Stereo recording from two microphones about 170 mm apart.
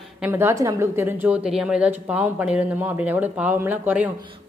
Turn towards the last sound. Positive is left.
turn(degrees=-10)  # may be behind; listen again after turning